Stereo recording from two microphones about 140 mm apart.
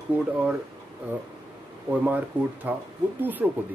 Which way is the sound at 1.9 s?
10° right (ahead or behind).